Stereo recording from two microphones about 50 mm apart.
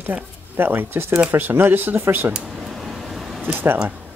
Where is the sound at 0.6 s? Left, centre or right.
Right.